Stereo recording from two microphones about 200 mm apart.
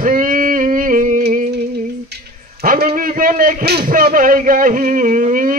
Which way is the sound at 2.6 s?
45° right (ahead or behind).